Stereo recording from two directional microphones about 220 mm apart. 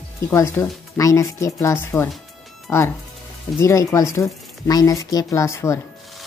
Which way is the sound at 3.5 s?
15° left (ahead or behind).